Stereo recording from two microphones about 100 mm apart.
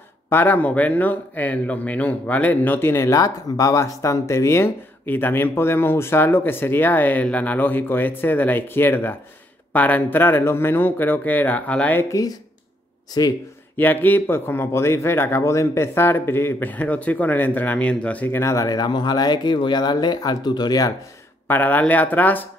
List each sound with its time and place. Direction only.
0.3 s speech: 20° left (ahead or behind)
12.0 s speech: 35° left (ahead or behind)
13.2 s speech: 45° left (ahead or behind)
13.7 s speech: 20° left (ahead or behind); by 20.9 s 40° left (ahead or behind)
21.5 s speech: 20° left (ahead or behind)